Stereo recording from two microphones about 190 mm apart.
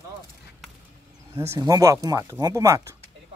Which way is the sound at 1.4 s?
15° right (ahead or behind).